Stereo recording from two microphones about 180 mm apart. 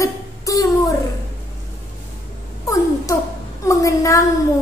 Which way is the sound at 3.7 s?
20° left (ahead or behind).